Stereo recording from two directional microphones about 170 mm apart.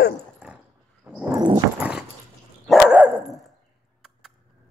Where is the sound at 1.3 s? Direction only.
25° right (ahead or behind).